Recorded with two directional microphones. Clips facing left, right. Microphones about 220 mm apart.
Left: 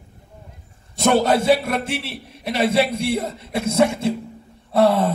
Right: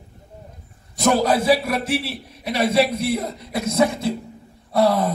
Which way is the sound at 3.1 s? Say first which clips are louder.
Left 1 dB; 25° left (ahead or behind).